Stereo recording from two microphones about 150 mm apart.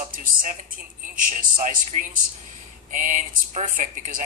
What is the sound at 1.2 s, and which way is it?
Speech, 65° right (ahead or behind).